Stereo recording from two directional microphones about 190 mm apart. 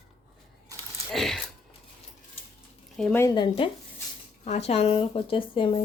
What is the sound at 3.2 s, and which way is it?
Speech, 25° left (ahead or behind).